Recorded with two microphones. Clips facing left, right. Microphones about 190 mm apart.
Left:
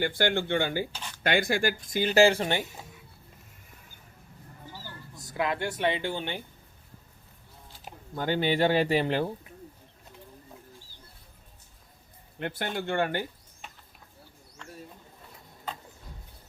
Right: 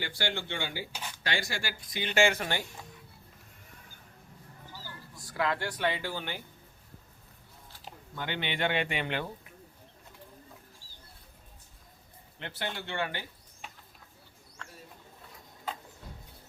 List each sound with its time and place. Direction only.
0.0 s speech: 50° left (ahead or behind); by 2.6 s 25° left (ahead or behind)
5.1 s speech: 20° left (ahead or behind)
8.1 s speech: 40° left (ahead or behind)
12.4 s speech: 50° left (ahead or behind)